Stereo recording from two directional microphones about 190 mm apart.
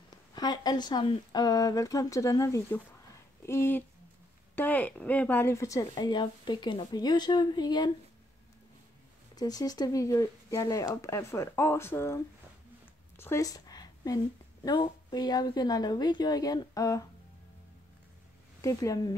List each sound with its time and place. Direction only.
0.1 s speech: 20° left (ahead or behind)
9.3 s speech: 20° left (ahead or behind)
13.2 s a woman's voice: 15° left (ahead or behind)
18.6 s speech: 15° left (ahead or behind)